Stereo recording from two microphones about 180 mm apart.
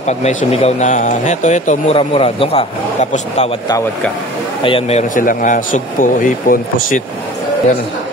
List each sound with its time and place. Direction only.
0.0 s speech: 40° left (ahead or behind)
4.6 s speech: 35° left (ahead or behind)
5.2 s speech: 50° left (ahead or behind)